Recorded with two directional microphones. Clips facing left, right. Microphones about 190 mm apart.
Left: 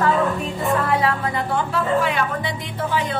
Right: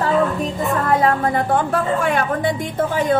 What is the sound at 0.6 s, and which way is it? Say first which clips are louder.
A woman's voice: right 2 dB; 45° right (ahead or behind).